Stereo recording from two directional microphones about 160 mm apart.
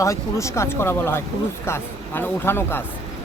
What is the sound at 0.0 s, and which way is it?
Speech, 20° left (ahead or behind).